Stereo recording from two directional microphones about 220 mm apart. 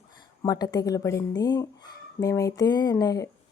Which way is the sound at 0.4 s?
15° left (ahead or behind).